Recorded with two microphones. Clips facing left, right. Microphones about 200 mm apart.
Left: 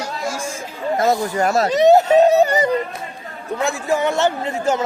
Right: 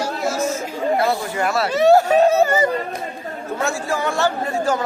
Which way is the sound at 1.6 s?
20° left (ahead or behind).